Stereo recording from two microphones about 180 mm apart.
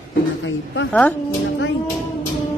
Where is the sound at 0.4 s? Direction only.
90° left.